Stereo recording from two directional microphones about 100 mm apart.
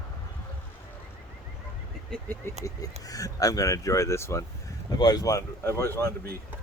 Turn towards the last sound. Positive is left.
turn(degrees=20)  # may be behind; listen again after turning